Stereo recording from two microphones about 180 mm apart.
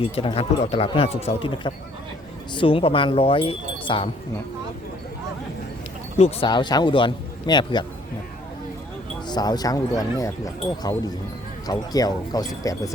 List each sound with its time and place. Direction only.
0.0 s speech: 30° left (ahead or behind)
6.1 s speech: 35° left (ahead or behind)
6.5 s speech: 25° left (ahead or behind)
9.2 s speech: 25° left (ahead or behind)